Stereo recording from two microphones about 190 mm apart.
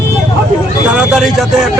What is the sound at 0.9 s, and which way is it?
Speech, 5° right (ahead or behind).